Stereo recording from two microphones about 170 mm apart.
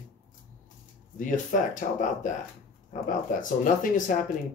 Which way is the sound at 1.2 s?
50° left (ahead or behind).